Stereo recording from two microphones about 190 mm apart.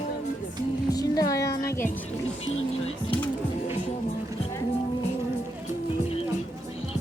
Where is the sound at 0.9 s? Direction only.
20° left (ahead or behind).